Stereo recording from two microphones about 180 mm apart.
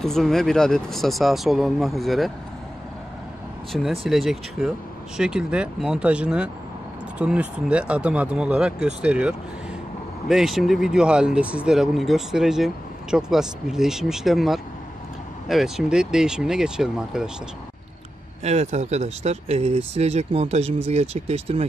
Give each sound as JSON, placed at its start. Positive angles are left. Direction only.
{"t": 0.0, "sound": "speech", "side_deg": 0}
{"t": 3.7, "sound": "speech", "side_deg": 0}
{"t": 18.4, "sound": "speech", "side_deg": -40}